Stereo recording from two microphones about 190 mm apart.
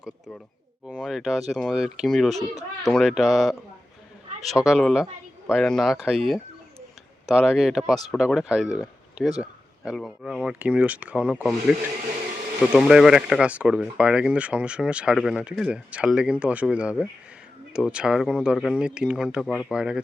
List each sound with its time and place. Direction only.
0.9 s speech: 5° right (ahead or behind)
12.7 s speech: 5° right (ahead or behind)